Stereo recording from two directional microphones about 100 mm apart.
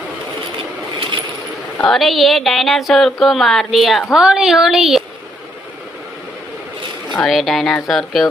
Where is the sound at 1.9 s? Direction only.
Centre (ahead or behind).